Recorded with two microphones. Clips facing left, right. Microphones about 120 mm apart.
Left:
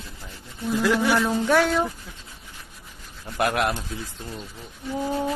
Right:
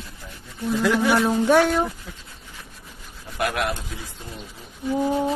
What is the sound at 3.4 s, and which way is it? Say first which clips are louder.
Speech: left 2 dB; 35° left (ahead or behind).